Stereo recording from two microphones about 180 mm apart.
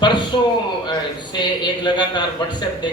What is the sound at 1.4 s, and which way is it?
Speech, 25° left (ahead or behind).